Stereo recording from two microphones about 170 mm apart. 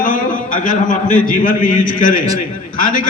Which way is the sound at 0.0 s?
50° left (ahead or behind).